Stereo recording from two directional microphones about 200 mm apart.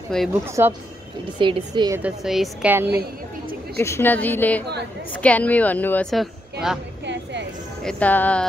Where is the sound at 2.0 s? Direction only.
5° right (ahead or behind).